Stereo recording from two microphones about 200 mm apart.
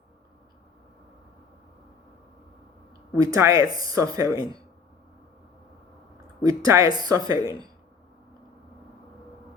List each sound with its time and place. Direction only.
3.2 s speech: 15° right (ahead or behind)
6.1 s speech: 15° right (ahead or behind)